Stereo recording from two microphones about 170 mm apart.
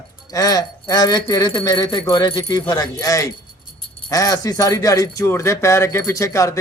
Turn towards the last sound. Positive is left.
turn(degrees=20)  # may be behind; listen again after turning